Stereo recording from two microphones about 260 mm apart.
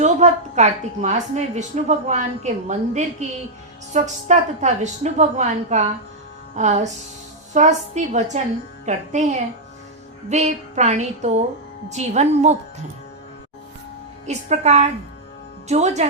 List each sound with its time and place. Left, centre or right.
0.0 s a woman's voice: right
14.3 s a woman's voice: right